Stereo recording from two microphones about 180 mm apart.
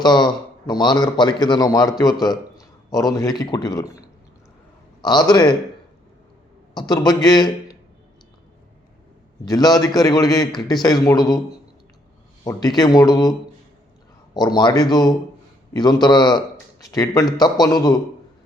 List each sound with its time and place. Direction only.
0.0 s a man's voice: 25° left (ahead or behind)
6.7 s a man's voice: 25° left (ahead or behind)
9.5 s a man's voice: 20° left (ahead or behind)
12.5 s a man's voice: 20° left (ahead or behind)
14.3 s a man's voice: 25° left (ahead or behind)